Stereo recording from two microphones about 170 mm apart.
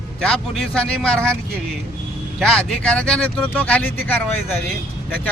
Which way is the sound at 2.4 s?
5° left (ahead or behind).